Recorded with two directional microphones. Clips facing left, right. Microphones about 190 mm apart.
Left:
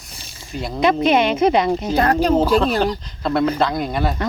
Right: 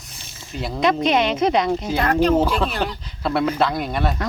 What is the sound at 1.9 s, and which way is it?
Speech, 40° left (ahead or behind).